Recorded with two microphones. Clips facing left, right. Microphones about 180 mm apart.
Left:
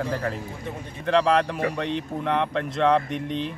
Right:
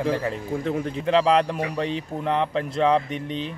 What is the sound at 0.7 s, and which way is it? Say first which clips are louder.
Speech: right 9 dB; 90° right.